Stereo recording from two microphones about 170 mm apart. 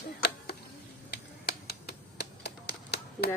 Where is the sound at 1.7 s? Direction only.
70° left (ahead or behind).